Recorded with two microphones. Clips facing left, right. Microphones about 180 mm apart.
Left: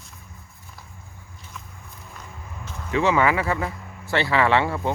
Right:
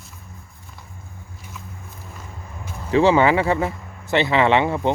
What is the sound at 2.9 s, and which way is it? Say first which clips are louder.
Speech: right 5 dB; 30° right (ahead or behind).